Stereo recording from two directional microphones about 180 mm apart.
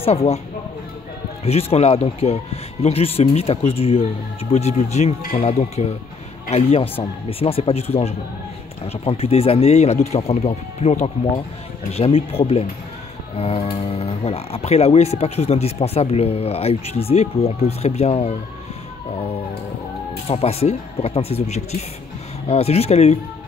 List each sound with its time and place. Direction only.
0.0 s speech: 35° left (ahead or behind)
1.4 s speech: 35° left (ahead or behind)
20.2 s speech: 35° left (ahead or behind)